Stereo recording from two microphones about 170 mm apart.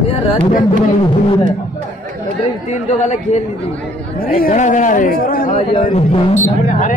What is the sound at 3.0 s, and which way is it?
Speech, 45° left (ahead or behind).